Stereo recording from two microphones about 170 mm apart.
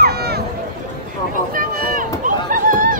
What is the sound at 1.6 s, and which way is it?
Run, 55° right (ahead or behind).